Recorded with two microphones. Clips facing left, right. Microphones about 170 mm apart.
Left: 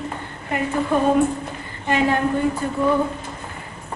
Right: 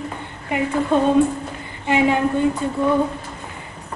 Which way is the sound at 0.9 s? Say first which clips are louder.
Right 2 dB; 25° right (ahead or behind).